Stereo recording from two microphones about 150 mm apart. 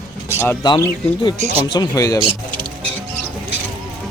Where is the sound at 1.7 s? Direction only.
25° left (ahead or behind).